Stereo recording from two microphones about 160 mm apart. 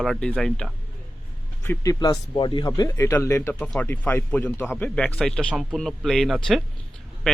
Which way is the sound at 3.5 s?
5° left (ahead or behind).